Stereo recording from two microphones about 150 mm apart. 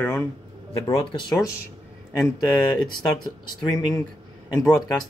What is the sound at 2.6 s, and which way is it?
Speech, 30° left (ahead or behind).